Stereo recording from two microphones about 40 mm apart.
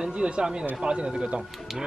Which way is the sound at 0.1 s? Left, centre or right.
Right.